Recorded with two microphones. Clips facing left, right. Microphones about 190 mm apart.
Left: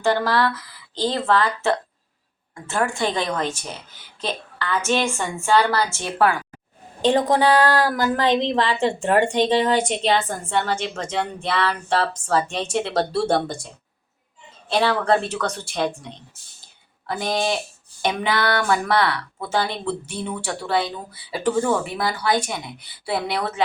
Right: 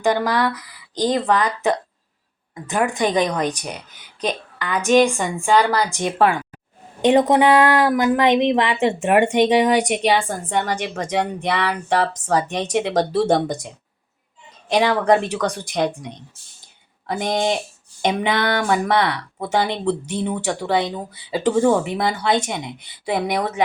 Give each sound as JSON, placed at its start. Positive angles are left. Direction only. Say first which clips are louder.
{"t": 0.0, "sound": "a woman's voice", "louder": "right 1 dB", "side_deg": -15}